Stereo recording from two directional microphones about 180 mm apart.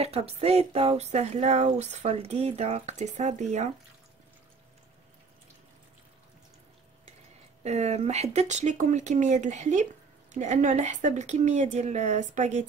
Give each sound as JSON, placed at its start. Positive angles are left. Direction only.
{"t": 0.0, "sound": "speech", "side_deg": -35}
{"t": 7.6, "sound": "speech", "side_deg": -40}